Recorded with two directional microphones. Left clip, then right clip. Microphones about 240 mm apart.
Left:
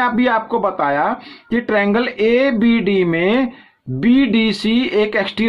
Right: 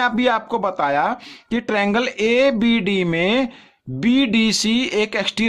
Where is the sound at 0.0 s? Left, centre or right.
Right.